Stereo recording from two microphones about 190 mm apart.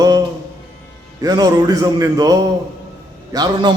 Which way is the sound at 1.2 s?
20° right (ahead or behind).